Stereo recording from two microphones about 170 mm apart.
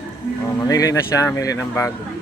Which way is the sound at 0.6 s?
20° left (ahead or behind).